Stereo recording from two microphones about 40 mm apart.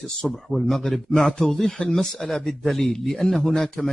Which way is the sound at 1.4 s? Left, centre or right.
Centre.